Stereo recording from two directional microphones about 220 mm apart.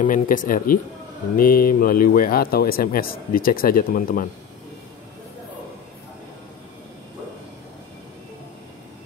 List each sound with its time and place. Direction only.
0.0 s speech: 35° left (ahead or behind)